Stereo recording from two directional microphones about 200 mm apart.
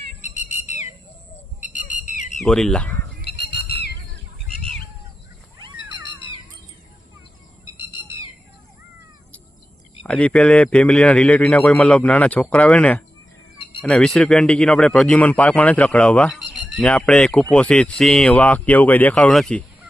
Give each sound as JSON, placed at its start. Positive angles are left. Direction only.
{"t": 0.2, "sound": "whistle", "side_deg": 35}
{"t": 1.6, "sound": "a sound", "side_deg": 40}
{"t": 2.4, "sound": "speech", "side_deg": 0}
{"t": 3.2, "sound": "squawk", "side_deg": 55}
{"t": 10.1, "sound": "a man's voice", "side_deg": 5}